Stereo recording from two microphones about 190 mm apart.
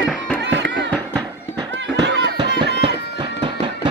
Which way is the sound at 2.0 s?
65° right (ahead or behind).